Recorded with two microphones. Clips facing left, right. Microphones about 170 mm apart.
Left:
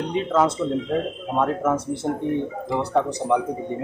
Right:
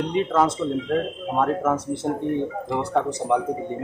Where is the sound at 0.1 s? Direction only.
Centre (ahead or behind).